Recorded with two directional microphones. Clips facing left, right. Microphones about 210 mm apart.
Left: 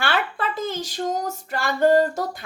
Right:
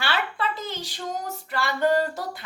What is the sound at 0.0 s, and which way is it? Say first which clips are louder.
Speech: left 3 dB; 50° left (ahead or behind).